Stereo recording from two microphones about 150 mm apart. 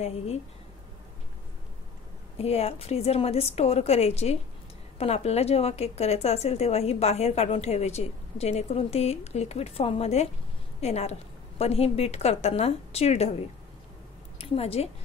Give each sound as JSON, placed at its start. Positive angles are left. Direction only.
{"t": 2.3, "sound": "a woman's voice", "side_deg": 45}
{"t": 14.4, "sound": "a woman's voice", "side_deg": 40}